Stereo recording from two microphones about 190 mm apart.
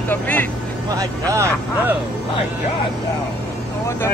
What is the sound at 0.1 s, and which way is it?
Speech, 10° left (ahead or behind).